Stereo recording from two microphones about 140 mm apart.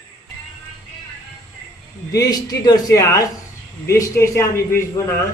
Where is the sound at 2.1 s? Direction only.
25° left (ahead or behind).